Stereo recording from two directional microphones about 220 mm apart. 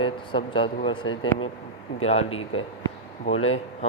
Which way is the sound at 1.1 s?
65° left (ahead or behind).